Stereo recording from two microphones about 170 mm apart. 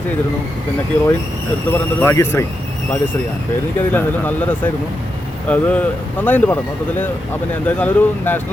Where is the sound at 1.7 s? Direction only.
10° left (ahead or behind).